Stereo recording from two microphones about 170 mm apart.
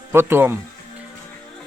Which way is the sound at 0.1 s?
15° right (ahead or behind).